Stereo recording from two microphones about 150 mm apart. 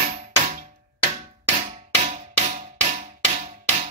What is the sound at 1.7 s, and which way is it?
Music, 55° right (ahead or behind).